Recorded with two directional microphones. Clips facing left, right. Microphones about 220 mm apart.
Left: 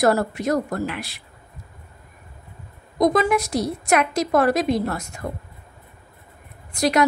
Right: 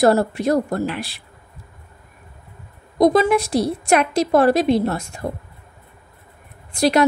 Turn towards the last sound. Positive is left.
turn(degrees=-30)  # may be behind; listen again after turning